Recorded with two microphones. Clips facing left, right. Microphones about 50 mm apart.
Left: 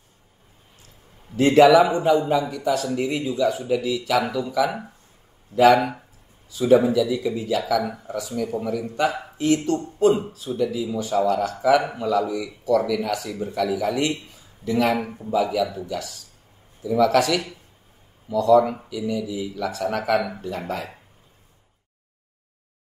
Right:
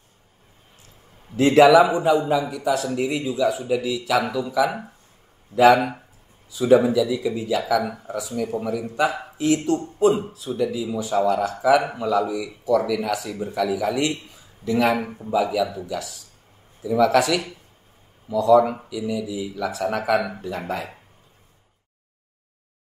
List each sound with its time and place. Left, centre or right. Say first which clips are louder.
1.5 s speech: right 1 dB; centre
2.3 s a man's voice: even; centre
18.4 s speech: right 1 dB; centre